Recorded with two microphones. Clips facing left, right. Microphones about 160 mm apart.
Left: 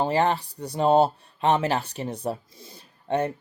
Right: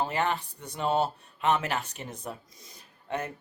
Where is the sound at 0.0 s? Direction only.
30° left (ahead or behind).